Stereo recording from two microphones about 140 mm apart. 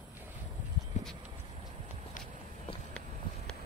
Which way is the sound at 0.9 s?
60° left (ahead or behind).